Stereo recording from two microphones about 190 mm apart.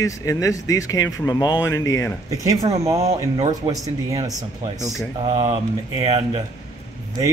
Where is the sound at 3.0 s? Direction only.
35° right (ahead or behind).